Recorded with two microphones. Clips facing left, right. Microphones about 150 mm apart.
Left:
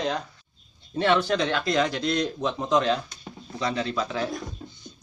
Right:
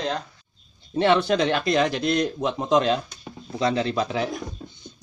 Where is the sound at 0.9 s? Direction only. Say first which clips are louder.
Right 3 dB; 20° right (ahead or behind).